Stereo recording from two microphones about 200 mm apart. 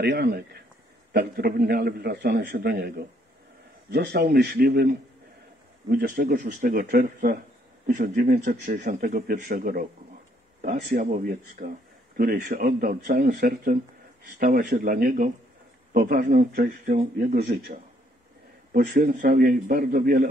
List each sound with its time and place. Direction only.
0.0 s a man's voice: 55° right (ahead or behind)